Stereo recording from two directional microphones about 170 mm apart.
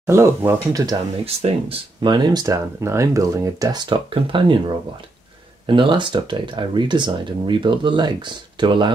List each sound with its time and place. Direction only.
0.0 s speech: 15° right (ahead or behind)
1.2 s speech: 35° right (ahead or behind)
5.7 s speech: 30° right (ahead or behind)